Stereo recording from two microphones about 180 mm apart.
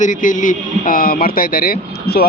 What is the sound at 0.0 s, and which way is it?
A man's voice, 45° left (ahead or behind).